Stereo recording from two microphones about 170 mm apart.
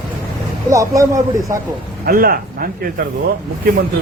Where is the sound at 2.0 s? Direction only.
60° right (ahead or behind).